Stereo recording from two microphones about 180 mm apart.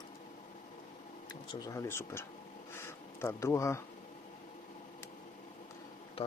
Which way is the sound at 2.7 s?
15° left (ahead or behind).